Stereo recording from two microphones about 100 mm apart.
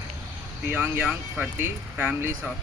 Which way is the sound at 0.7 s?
20° right (ahead or behind).